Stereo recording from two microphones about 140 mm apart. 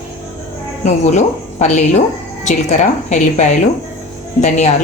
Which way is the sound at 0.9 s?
55° left (ahead or behind).